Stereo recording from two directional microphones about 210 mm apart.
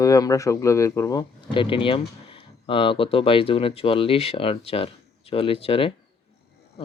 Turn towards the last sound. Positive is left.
turn(degrees=25)  # may be behind; listen again after turning